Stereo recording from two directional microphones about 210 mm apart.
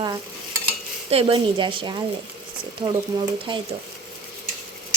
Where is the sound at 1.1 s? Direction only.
25° right (ahead or behind).